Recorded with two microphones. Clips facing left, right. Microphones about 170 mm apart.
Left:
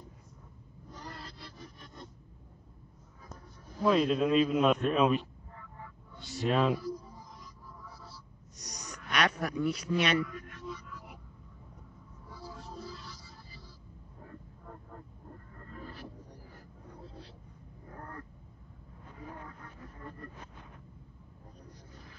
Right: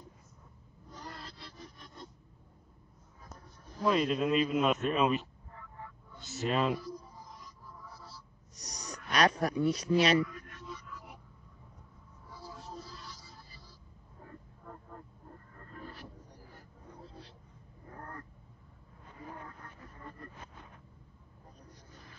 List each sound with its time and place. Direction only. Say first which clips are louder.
3.8 s a man's voice: left 2 dB; centre (ahead or behind)
6.4 s a man's voice: left 2 dB; centre (ahead or behind)
8.5 s speech: right 1 dB; 30° right (ahead or behind)